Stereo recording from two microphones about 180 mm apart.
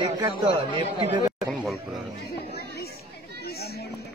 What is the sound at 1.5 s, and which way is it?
Speech, centre (ahead or behind).